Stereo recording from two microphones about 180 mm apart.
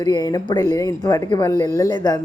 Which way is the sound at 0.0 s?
20° left (ahead or behind).